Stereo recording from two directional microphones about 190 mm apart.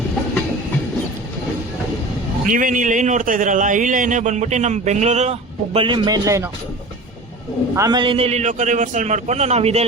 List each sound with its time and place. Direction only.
2.5 s a man's voice: 45° right (ahead or behind); by 6.5 s 15° right (ahead or behind)
7.8 s a man's voice: 20° right (ahead or behind)